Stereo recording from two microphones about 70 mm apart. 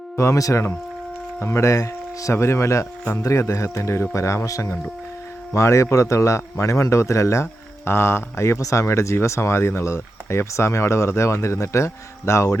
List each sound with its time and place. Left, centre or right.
0.2 s speech: left